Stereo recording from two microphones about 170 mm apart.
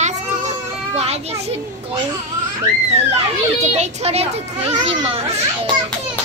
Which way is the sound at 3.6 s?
40° right (ahead or behind).